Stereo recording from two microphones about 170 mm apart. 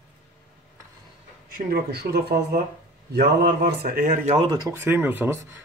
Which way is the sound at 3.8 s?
60° right (ahead or behind).